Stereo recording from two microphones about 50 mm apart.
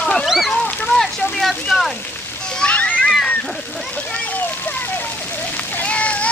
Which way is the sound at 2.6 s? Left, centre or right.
Left.